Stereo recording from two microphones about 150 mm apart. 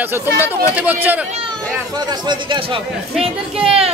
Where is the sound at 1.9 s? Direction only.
30° right (ahead or behind).